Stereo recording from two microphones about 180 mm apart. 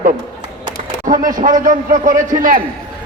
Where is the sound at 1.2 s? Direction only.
50° right (ahead or behind).